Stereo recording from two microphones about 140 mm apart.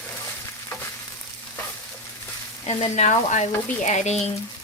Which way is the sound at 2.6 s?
45° left (ahead or behind).